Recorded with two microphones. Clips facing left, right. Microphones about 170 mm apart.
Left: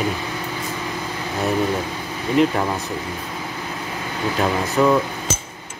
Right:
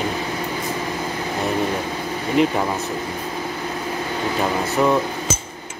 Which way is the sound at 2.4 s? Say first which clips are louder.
Left 1 dB; centre (ahead or behind).